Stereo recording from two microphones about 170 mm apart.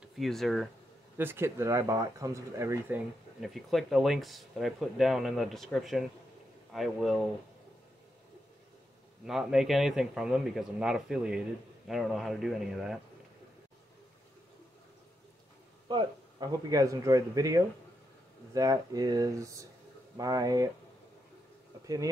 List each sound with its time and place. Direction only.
0.0 s speech: centre (ahead or behind)
1.1 s speech: 15° right (ahead or behind)
3.3 s speech: centre (ahead or behind)
9.2 s speech: 5° right (ahead or behind)
15.9 s speech: 25° right (ahead or behind)
21.8 s speech: 20° right (ahead or behind)